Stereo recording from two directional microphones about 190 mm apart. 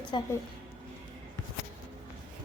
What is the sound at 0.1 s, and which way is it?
Speech, 25° left (ahead or behind).